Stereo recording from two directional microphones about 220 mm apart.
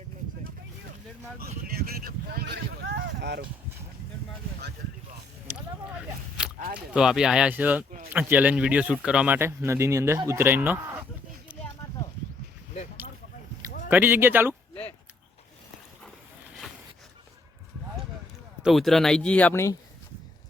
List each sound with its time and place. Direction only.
1.6 s a sound: 40° right (ahead or behind)
6.7 s speech: 5° right (ahead or behind)
13.9 s speech: 10° right (ahead or behind)
18.6 s speech: centre (ahead or behind)